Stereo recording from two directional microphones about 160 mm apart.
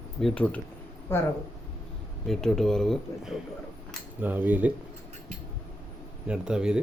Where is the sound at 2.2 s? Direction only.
Centre (ahead or behind).